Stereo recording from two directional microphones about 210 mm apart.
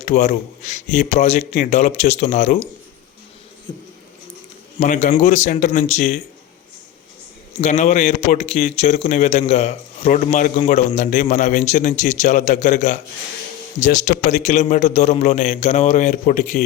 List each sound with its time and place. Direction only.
0.0 s a man's voice: 35° left (ahead or behind)
4.8 s a man's voice: 35° left (ahead or behind)
7.6 s a man's voice: 35° left (ahead or behind)